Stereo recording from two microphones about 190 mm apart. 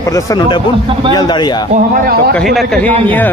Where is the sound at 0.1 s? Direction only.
20° left (ahead or behind).